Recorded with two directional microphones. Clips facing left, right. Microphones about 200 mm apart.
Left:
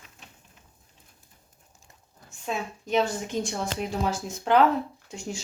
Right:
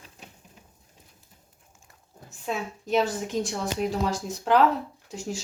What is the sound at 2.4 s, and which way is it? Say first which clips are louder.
Speech: right 1 dB; centre (ahead or behind).